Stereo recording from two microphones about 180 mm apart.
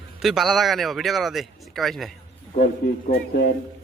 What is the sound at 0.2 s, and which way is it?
Speech, centre (ahead or behind).